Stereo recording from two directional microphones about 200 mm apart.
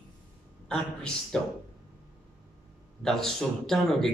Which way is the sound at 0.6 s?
5° left (ahead or behind).